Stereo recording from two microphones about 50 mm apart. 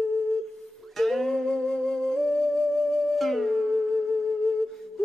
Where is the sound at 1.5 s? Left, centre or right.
Centre.